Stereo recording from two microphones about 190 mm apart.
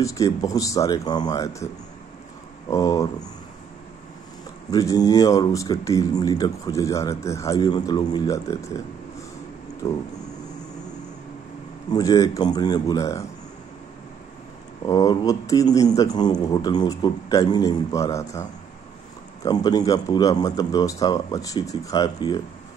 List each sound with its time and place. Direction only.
0.0 s speech: 15° left (ahead or behind)
2.7 s speech: 20° left (ahead or behind)
4.6 s speech: 20° left (ahead or behind)
11.9 s speech: 20° left (ahead or behind)
14.9 s speech: 20° left (ahead or behind)